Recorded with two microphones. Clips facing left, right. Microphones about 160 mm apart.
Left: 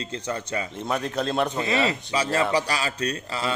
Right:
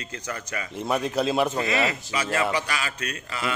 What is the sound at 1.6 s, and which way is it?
A man's voice, 30° left (ahead or behind).